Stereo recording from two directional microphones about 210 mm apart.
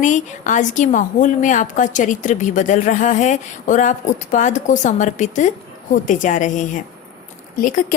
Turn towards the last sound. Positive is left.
turn(degrees=40)  # may be behind; listen again after turning